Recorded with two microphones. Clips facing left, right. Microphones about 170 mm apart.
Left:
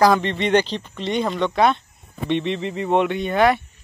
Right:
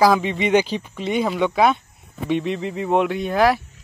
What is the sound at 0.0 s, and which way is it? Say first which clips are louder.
Speech: even; 5° right (ahead or behind).